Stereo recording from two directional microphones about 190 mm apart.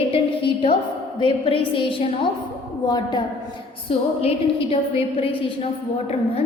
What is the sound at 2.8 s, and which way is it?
Music, 20° left (ahead or behind).